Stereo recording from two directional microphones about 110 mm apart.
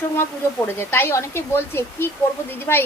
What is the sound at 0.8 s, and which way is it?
A woman's voice, 20° left (ahead or behind).